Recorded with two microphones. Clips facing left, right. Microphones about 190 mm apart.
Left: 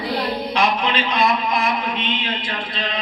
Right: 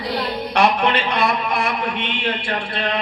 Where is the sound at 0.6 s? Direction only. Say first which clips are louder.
Right 4 dB; 75° right (ahead or behind).